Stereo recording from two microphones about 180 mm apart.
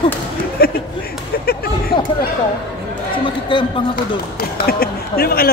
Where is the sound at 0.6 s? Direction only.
60° left (ahead or behind).